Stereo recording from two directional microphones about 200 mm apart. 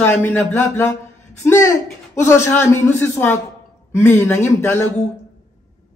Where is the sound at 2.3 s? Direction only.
10° left (ahead or behind).